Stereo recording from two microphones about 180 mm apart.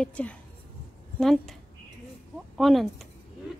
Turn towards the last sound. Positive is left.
turn(degrees=0)  # may be behind; listen again after turning